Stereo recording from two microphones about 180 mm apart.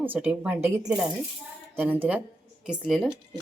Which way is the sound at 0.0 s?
10° right (ahead or behind).